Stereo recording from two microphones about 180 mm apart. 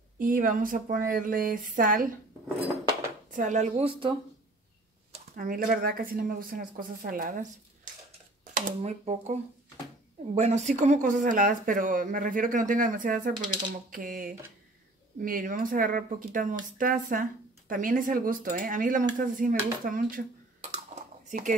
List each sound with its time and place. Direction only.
0.2 s speech: 50° right (ahead or behind)
3.3 s a woman's voice: 45° right (ahead or behind)
5.3 s speech: 50° right (ahead or behind)
8.5 s a woman's voice: 40° right (ahead or behind)
13.3 s speech: 25° right (ahead or behind)
13.8 s speech: 50° right (ahead or behind)
20.9 s a sound: 45° right (ahead or behind)